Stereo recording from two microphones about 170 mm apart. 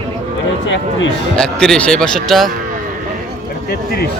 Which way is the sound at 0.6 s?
90° left.